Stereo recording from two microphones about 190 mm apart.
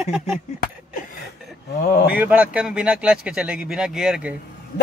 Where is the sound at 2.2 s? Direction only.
5° right (ahead or behind).